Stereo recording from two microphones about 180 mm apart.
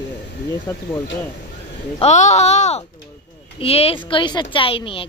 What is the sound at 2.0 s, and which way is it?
A woman's voice, 40° left (ahead or behind).